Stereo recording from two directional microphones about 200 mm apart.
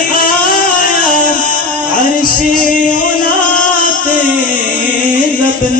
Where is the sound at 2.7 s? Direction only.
40° left (ahead or behind).